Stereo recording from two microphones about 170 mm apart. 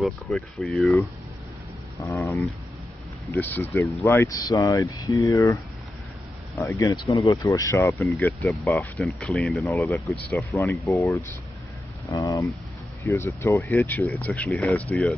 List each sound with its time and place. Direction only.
0.0 s speech: centre (ahead or behind)
3.3 s speech: 10° left (ahead or behind)
8.0 s speech: centre (ahead or behind)